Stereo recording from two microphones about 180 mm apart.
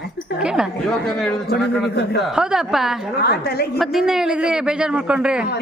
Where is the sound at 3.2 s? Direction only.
60° left (ahead or behind).